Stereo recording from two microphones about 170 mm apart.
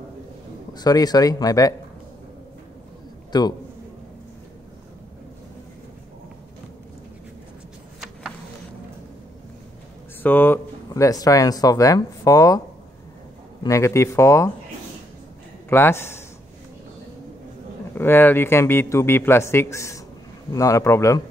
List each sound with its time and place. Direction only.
0.7 s speech: 25° left (ahead or behind)
3.3 s a man's voice: 25° left (ahead or behind)
10.2 s a man's voice: 10° left (ahead or behind)
15.7 s a man's voice: 15° left (ahead or behind)
17.9 s a man's voice: 15° left (ahead or behind)